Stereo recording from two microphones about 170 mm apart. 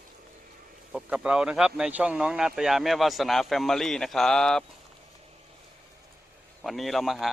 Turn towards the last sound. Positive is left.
turn(degrees=0)  # may be behind; listen again after turning